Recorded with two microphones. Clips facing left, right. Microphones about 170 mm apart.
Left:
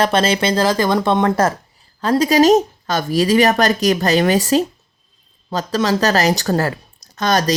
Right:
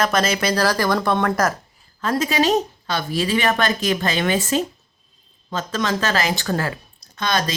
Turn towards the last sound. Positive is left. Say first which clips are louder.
# left 5 dB
turn(degrees=45)  # may be behind; listen again after turning